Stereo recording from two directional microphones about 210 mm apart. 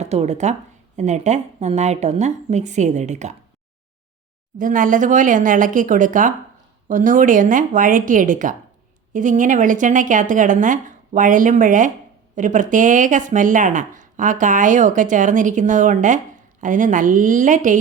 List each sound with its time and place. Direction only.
0.0 s speech: 30° right (ahead or behind)
4.5 s speech: 40° right (ahead or behind)